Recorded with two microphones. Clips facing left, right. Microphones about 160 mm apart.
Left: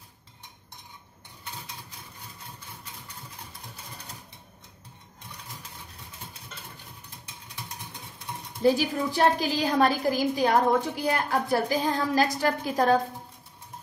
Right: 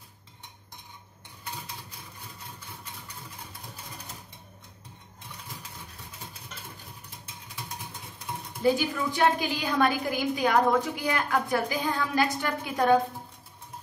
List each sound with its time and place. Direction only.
8.6 s a woman's voice: 35° left (ahead or behind)